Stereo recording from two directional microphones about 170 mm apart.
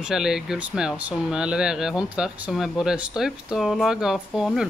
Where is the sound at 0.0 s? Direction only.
5° right (ahead or behind).